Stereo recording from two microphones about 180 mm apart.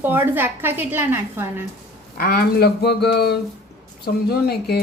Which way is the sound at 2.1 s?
60° left (ahead or behind).